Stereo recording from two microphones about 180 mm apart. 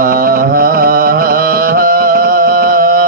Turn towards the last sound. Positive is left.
turn(degrees=-55)  # may be behind; listen again after turning